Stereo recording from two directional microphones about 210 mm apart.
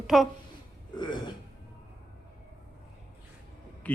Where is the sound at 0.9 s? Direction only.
20° left (ahead or behind).